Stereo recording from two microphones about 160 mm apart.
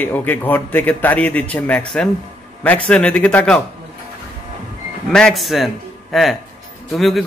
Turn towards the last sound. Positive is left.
turn(degrees=0)  # may be behind; listen again after turning